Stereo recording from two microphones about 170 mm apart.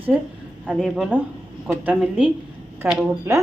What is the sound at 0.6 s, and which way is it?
A woman's voice, centre (ahead or behind).